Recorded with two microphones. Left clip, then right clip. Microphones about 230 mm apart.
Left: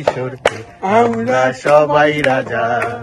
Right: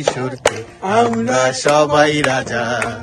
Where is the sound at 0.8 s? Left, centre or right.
Left.